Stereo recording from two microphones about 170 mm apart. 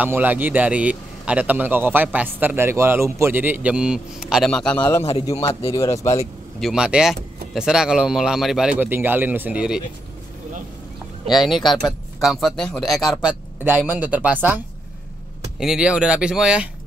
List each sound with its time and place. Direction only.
0.0 s a man's voice: 10° right (ahead or behind); by 6.1 s 15° left (ahead or behind)
6.6 s a man's voice: 5° right (ahead or behind)
11.2 s a man's voice: centre (ahead or behind)
15.6 s a man's voice: 5° right (ahead or behind)